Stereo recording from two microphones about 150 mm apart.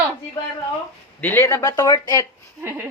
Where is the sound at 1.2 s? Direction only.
15° left (ahead or behind).